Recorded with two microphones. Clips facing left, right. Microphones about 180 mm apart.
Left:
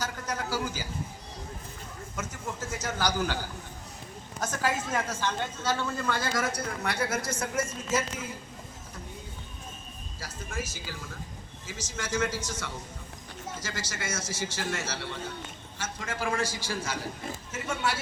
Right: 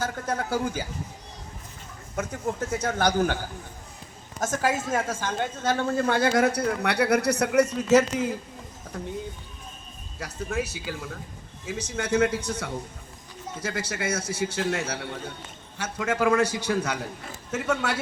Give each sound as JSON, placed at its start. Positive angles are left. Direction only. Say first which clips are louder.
{"t": 0.3, "sound": "a woman's voice", "louder": "right 4 dB", "side_deg": -55}
{"t": 2.1, "sound": "a woman's voice", "louder": "right 8 dB", "side_deg": -60}
{"t": 4.4, "sound": "a woman's voice", "louder": "right 4 dB", "side_deg": -45}
{"t": 10.2, "sound": "a woman's voice", "louder": "right 8 dB", "side_deg": -65}